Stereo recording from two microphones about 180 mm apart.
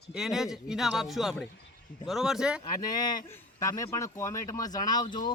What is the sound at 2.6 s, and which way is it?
Speech, 20° left (ahead or behind).